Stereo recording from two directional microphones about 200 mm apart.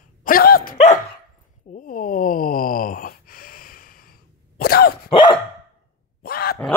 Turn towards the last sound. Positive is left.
turn(degrees=50)  # may be behind; listen again after turning